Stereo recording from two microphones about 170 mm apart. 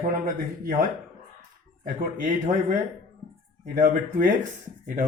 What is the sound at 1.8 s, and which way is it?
A man's voice, 55° right (ahead or behind).